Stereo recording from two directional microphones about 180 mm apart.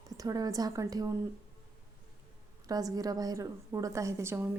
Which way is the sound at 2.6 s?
20° right (ahead or behind).